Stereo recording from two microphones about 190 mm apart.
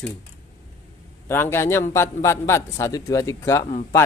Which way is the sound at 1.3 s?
10° left (ahead or behind).